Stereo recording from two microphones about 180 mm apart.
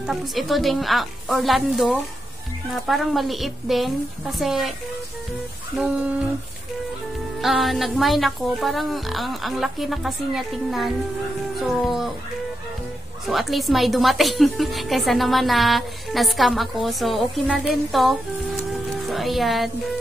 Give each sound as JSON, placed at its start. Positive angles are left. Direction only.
{"t": 0.0, "sound": "a woman's voice", "side_deg": 0}
{"t": 7.4, "sound": "a woman's voice", "side_deg": 0}
{"t": 13.3, "sound": "a woman's voice", "side_deg": 0}